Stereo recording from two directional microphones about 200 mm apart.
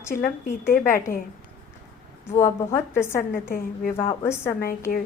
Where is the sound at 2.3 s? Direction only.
10° left (ahead or behind).